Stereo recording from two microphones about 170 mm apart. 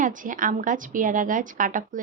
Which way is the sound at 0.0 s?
50° right (ahead or behind).